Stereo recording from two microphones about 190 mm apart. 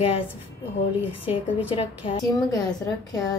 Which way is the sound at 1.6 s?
30° left (ahead or behind).